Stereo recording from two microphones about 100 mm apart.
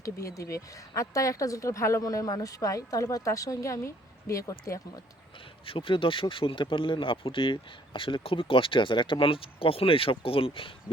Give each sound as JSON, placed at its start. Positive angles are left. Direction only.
{"t": 0.0, "sound": "speech", "side_deg": 35}
{"t": 5.6, "sound": "speech", "side_deg": 60}